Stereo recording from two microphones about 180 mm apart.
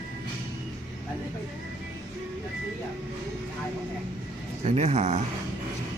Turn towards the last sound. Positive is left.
turn(degrees=-40)  # may be behind; listen again after turning